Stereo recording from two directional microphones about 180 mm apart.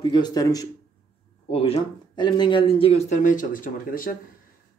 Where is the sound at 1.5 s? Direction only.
30° left (ahead or behind).